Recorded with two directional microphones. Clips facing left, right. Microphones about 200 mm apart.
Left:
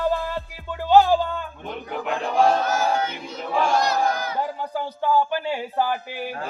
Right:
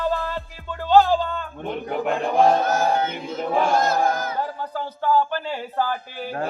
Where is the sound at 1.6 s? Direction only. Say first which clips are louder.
Right 9 dB; 45° right (ahead or behind).